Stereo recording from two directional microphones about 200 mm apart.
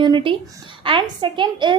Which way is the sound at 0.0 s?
25° right (ahead or behind).